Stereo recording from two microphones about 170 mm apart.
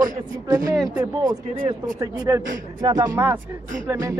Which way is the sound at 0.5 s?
20° right (ahead or behind).